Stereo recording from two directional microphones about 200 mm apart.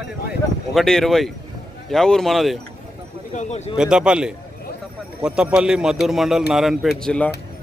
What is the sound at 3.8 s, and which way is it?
A man's voice, 5° right (ahead or behind).